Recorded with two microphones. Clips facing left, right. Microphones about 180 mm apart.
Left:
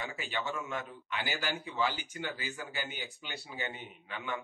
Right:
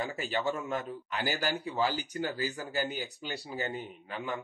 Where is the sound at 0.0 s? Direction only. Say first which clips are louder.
Right 6 dB; 40° right (ahead or behind).